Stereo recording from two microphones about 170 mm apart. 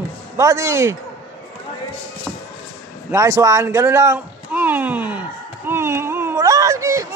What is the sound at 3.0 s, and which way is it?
A man's voice, 15° right (ahead or behind).